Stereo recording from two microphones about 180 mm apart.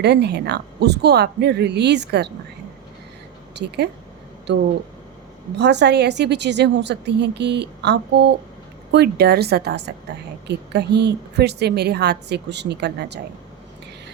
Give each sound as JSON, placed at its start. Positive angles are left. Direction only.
{"t": 0.0, "sound": "a woman's voice", "side_deg": -70}
{"t": 3.5, "sound": "a woman's voice", "side_deg": -70}
{"t": 5.5, "sound": "a woman's voice", "side_deg": -70}